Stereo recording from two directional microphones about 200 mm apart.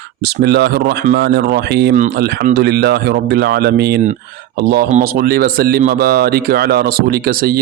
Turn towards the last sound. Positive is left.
turn(degrees=-50)  # may be behind; listen again after turning